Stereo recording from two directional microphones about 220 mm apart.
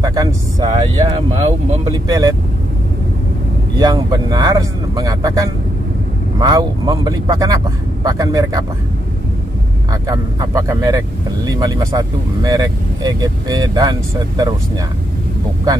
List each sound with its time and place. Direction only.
0.0 s speech: 15° right (ahead or behind)
3.7 s speech: 15° right (ahead or behind)
10.0 s speech: 15° right (ahead or behind)